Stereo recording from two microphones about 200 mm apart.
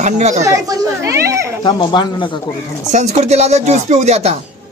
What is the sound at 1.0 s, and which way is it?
Speech, 15° right (ahead or behind).